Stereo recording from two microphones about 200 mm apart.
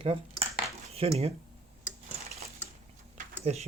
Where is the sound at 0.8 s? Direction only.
30° right (ahead or behind).